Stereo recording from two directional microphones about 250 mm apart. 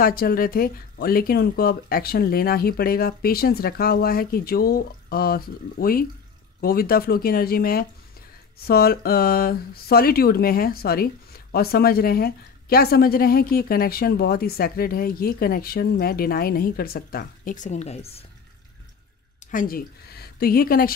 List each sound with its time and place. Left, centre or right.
0.0 s speech: left
19.5 s speech: left